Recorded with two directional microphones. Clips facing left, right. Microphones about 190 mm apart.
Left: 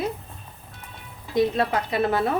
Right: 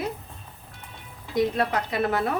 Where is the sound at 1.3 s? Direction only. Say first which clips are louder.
Left 2 dB; 25° left (ahead or behind).